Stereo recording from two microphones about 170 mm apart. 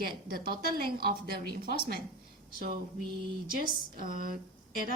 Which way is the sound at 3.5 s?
55° right (ahead or behind).